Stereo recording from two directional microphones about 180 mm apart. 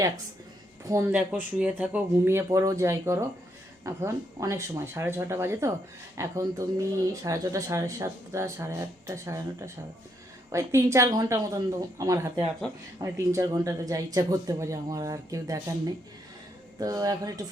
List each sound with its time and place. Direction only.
0.9 s speech: 15° right (ahead or behind)
1.1 s a woman's voice: 5° right (ahead or behind)
16.8 s a woman's voice: 20° right (ahead or behind)